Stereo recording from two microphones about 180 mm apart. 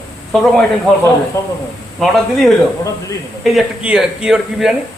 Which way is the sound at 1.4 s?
15° left (ahead or behind).